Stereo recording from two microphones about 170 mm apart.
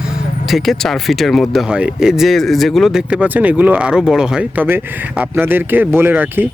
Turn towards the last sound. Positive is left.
turn(degrees=-10)  # may be behind; listen again after turning